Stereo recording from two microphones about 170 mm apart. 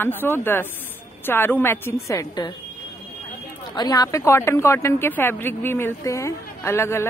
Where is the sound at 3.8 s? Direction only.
25° left (ahead or behind).